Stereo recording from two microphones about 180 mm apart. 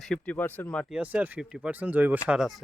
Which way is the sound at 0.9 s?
10° right (ahead or behind).